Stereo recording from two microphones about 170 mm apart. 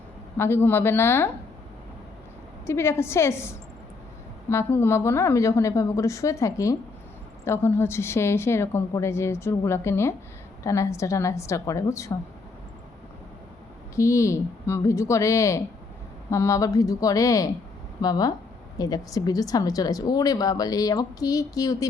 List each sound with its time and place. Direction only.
0.3 s a woman's voice: 15° left (ahead or behind)
2.6 s a woman's voice: 15° left (ahead or behind)
13.9 s a woman's voice: 20° left (ahead or behind)